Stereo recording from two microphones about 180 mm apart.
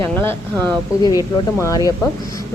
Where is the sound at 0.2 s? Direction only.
10° left (ahead or behind).